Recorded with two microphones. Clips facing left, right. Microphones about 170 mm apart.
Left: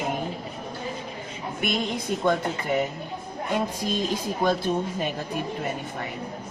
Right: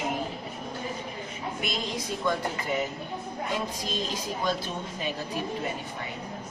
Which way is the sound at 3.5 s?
50° left (ahead or behind).